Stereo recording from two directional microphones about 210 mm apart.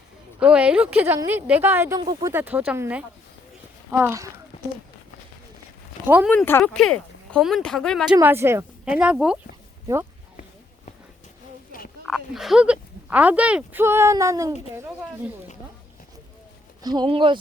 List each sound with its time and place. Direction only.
0.3 s speech: 5° right (ahead or behind)
2.0 s speech: 20° right (ahead or behind)
2.3 s speech: 10° right (ahead or behind)
6.1 s speech: 10° right (ahead or behind)
6.3 s speech: 10° left (ahead or behind)
8.1 s speech: 10° right (ahead or behind)
12.0 s speech: centre (ahead or behind)
16.8 s speech: 20° right (ahead or behind)